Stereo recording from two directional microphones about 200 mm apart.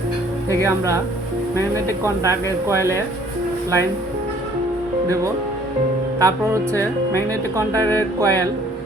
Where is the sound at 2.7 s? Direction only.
15° right (ahead or behind).